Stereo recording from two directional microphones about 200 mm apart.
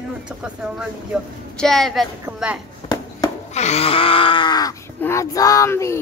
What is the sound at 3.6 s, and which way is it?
Speech, 30° left (ahead or behind).